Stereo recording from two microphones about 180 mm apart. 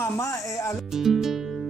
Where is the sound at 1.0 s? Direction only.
Centre (ahead or behind).